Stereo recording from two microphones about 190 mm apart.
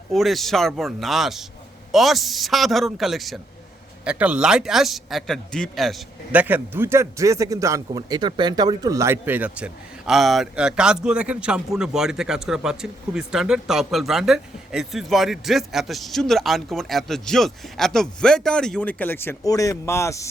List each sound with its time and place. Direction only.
0.1 s speech: centre (ahead or behind)